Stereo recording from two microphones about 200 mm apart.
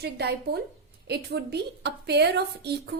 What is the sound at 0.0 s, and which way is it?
A woman's voice, 55° right (ahead or behind).